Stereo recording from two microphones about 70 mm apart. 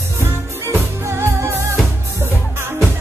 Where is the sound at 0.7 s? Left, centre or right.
Right.